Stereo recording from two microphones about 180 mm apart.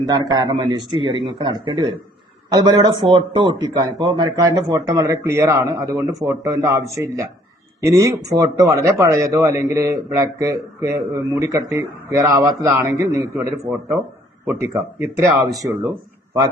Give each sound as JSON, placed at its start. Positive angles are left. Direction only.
{"t": 0.1, "sound": "a man's voice", "side_deg": -20}
{"t": 14.4, "sound": "speech", "side_deg": -15}